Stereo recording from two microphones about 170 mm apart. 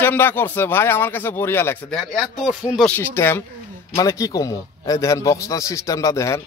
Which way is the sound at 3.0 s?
15° left (ahead or behind).